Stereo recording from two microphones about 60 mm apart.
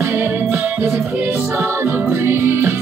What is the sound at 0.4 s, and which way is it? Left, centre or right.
Music, right.